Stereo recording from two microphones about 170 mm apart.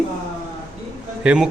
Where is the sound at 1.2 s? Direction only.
5° right (ahead or behind).